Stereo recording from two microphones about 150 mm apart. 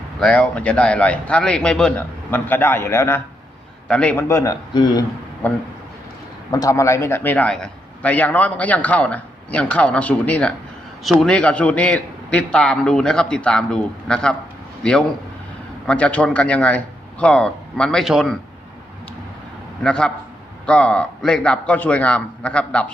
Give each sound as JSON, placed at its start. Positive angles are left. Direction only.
{"t": 0.2, "sound": "a man's voice", "side_deg": 5}
{"t": 6.5, "sound": "a man's voice", "side_deg": 20}
{"t": 15.9, "sound": "a man's voice", "side_deg": 10}
{"t": 19.8, "sound": "a man's voice", "side_deg": 5}